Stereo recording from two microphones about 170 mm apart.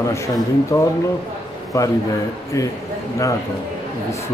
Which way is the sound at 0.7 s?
25° left (ahead or behind).